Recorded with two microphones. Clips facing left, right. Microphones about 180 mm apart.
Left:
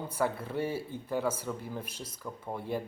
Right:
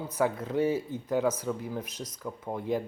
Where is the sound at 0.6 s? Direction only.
50° right (ahead or behind).